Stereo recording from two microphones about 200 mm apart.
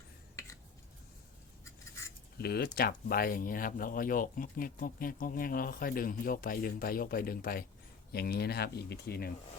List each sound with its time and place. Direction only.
2.4 s speech: 50° left (ahead or behind)